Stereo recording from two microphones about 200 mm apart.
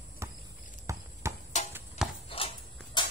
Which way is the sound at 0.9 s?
15° right (ahead or behind).